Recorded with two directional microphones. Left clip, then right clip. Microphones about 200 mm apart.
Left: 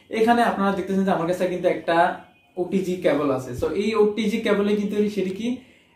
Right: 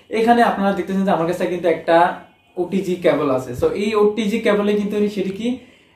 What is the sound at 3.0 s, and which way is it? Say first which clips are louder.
Speech: right 5 dB; 5° right (ahead or behind).